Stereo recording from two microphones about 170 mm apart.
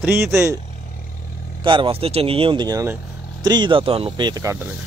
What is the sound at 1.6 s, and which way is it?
Speech, 30° right (ahead or behind).